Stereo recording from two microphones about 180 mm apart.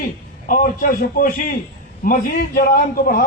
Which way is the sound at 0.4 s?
50° left (ahead or behind).